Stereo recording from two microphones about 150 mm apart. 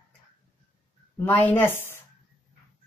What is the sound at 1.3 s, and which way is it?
Speech, 10° left (ahead or behind).